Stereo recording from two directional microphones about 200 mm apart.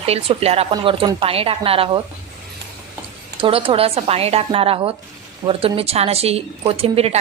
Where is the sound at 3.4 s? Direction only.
25° right (ahead or behind).